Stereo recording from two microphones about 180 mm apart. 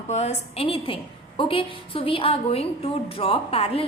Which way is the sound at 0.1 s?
35° left (ahead or behind).